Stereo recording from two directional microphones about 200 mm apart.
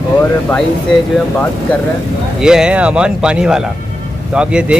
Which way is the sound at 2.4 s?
5° right (ahead or behind).